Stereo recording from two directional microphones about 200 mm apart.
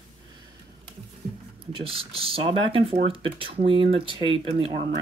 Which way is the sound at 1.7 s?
25° right (ahead or behind).